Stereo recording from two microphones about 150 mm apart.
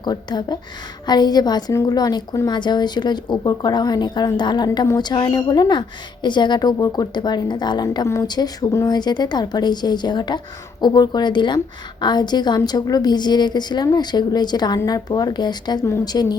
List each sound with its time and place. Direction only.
0.0 s a woman's voice: 30° left (ahead or behind)